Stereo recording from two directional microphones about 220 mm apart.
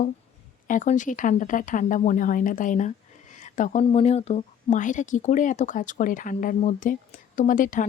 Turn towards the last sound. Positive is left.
turn(degrees=35)  # may be behind; listen again after turning